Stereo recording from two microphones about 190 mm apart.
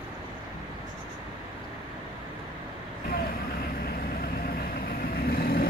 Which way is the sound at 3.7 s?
50° left (ahead or behind).